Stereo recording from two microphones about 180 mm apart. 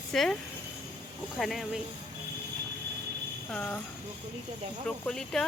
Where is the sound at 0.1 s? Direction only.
Centre (ahead or behind).